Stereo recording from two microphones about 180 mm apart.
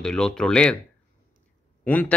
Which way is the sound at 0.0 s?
5° left (ahead or behind).